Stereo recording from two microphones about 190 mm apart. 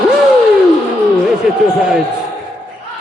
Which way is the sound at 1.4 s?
Centre (ahead or behind).